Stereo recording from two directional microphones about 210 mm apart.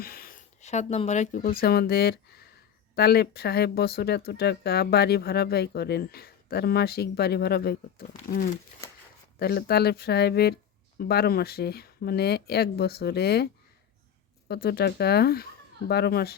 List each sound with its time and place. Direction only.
0.0 s speech: 45° left (ahead or behind)
9.4 s speech: 50° left (ahead or behind)